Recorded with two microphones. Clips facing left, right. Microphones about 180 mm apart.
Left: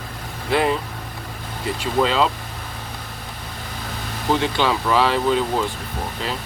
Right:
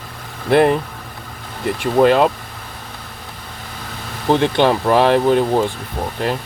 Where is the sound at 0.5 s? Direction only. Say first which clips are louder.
Right 7 dB; 55° right (ahead or behind).